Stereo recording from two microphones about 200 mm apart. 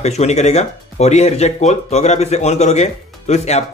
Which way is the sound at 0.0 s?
35° left (ahead or behind).